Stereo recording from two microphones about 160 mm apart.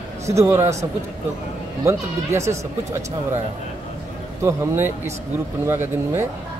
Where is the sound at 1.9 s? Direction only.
15° right (ahead or behind).